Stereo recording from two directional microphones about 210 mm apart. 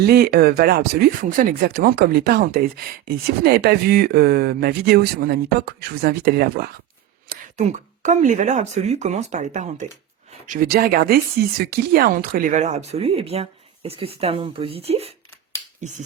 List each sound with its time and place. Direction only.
0.1 s speech: 45° right (ahead or behind)
7.3 s speech: 35° right (ahead or behind)